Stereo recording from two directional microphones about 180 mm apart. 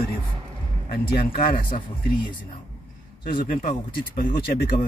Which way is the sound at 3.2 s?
55° left (ahead or behind).